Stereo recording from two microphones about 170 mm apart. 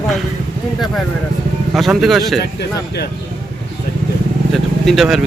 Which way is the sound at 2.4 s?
70° left (ahead or behind).